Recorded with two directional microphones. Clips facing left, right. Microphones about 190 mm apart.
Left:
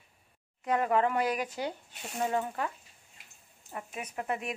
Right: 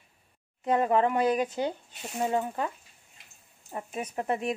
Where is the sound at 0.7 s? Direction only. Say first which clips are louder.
Right 3 dB; 25° right (ahead or behind).